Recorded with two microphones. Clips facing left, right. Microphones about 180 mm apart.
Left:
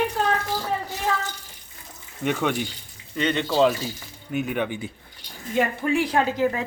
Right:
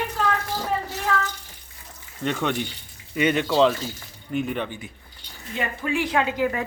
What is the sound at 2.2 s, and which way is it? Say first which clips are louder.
Speech: left 1 dB; 10° left (ahead or behind).